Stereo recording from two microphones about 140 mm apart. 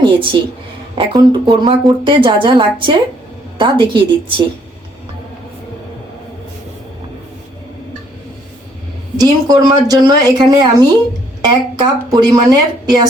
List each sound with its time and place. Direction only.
0.0 s a woman's voice: 35° right (ahead or behind)
9.1 s a woman's voice: 25° right (ahead or behind)